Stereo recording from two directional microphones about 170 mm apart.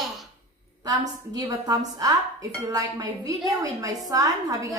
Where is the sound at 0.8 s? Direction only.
20° right (ahead or behind).